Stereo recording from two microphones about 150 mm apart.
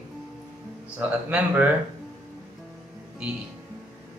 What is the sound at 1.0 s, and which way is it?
Speech, 10° right (ahead or behind).